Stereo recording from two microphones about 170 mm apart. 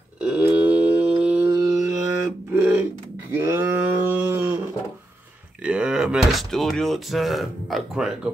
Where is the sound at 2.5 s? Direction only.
10° right (ahead or behind).